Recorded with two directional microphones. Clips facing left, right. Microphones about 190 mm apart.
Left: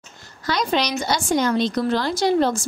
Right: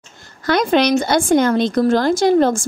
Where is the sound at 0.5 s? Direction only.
55° right (ahead or behind).